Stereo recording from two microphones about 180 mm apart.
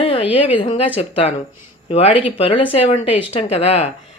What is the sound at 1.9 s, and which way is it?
Speech, 35° left (ahead or behind).